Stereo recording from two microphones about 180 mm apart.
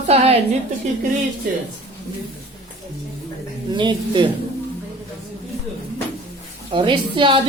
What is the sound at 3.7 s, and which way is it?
Speech, 25° right (ahead or behind).